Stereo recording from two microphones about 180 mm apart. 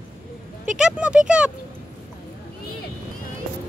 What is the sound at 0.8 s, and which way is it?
Speech, 5° right (ahead or behind).